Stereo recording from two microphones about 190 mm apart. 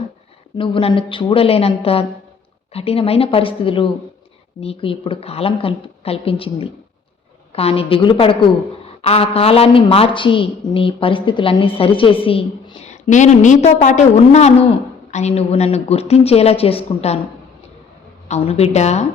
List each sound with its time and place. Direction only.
0.5 s a woman's voice: 25° left (ahead or behind)
18.3 s a woman's voice: 35° left (ahead or behind)